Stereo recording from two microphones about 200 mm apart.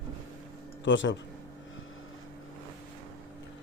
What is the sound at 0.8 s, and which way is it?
Speech, 65° left (ahead or behind).